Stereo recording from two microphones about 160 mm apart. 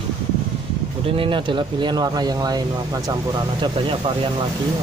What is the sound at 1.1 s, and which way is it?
Speech, 30° right (ahead or behind).